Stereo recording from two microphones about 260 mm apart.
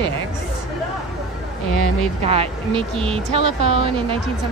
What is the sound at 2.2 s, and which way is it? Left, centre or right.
Speech, right.